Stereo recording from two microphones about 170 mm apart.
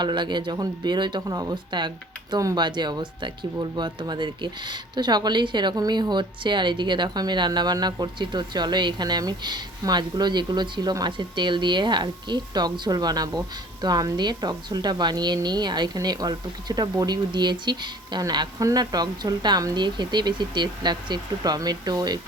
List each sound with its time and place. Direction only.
0.0 s speech: 25° right (ahead or behind)